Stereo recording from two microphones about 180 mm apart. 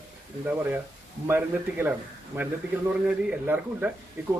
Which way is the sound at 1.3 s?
10° right (ahead or behind).